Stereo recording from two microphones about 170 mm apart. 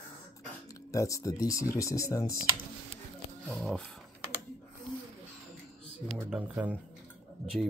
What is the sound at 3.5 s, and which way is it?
Speech, centre (ahead or behind).